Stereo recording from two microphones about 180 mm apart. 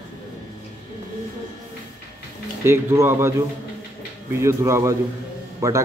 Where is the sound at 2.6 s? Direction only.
15° right (ahead or behind).